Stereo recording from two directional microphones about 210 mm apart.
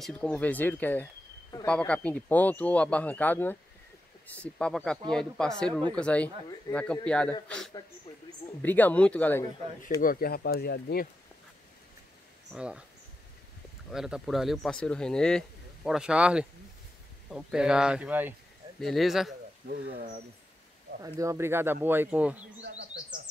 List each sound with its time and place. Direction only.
0.0 s speech: 5° left (ahead or behind)
10.0 s speech: 45° left (ahead or behind)
12.5 s speech: 5° right (ahead or behind)
13.9 s speech: centre (ahead or behind)
19.7 s speech: 45° right (ahead or behind)
21.0 s speech: 15° right (ahead or behind)